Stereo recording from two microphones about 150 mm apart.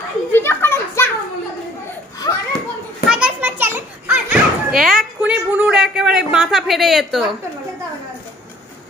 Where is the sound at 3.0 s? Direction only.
5° right (ahead or behind).